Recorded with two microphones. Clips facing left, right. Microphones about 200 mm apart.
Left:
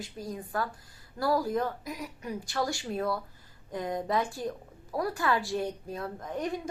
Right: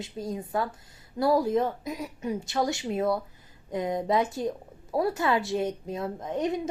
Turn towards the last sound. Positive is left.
turn(degrees=-20)  # may be behind; listen again after turning